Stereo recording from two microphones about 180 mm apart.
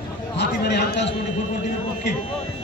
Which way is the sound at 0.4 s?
70° left (ahead or behind).